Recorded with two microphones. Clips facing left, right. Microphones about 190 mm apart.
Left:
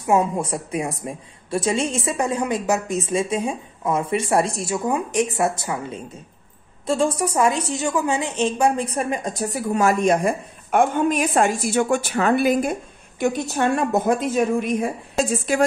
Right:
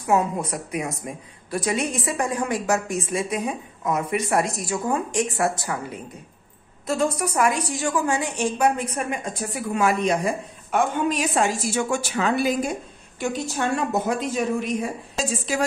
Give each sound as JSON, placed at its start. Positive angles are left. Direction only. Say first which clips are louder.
{"t": 0.0, "sound": "a woman's voice", "louder": "left 2 dB", "side_deg": 25}